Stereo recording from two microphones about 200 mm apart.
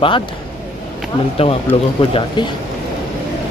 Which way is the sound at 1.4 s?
30° left (ahead or behind).